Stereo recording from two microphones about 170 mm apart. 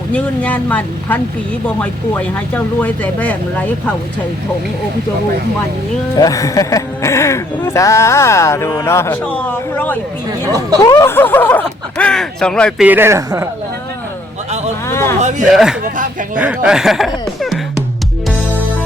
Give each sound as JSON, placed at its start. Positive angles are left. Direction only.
{"t": 0.1, "sound": "speech", "side_deg": 10}
{"t": 6.1, "sound": "speech", "side_deg": 20}
{"t": 12.8, "sound": "speech", "side_deg": -10}
{"t": 14.8, "sound": "speech", "side_deg": 15}
{"t": 15.8, "sound": "speech", "side_deg": -50}
{"t": 16.4, "sound": "speech", "side_deg": -5}